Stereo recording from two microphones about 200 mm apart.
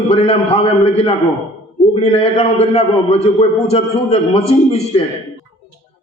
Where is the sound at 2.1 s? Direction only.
30° left (ahead or behind).